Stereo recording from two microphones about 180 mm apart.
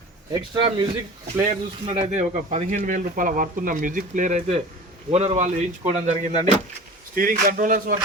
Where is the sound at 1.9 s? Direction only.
45° right (ahead or behind).